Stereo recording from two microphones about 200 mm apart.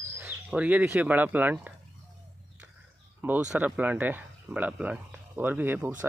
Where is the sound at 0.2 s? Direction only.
5° right (ahead or behind).